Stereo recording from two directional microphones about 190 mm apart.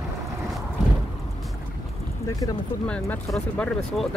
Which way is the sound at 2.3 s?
20° left (ahead or behind).